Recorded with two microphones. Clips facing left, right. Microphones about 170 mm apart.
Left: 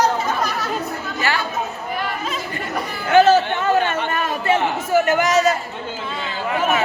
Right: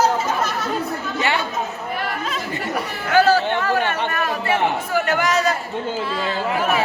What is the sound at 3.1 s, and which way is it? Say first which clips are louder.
Chatter: left 3 dB; 25° left (ahead or behind).